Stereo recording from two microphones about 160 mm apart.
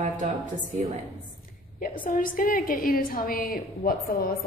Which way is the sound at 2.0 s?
60° left (ahead or behind).